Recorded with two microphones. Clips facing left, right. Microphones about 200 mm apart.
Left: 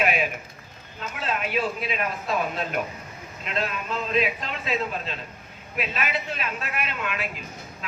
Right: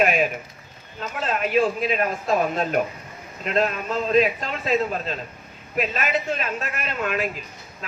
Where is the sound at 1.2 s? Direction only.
45° right (ahead or behind).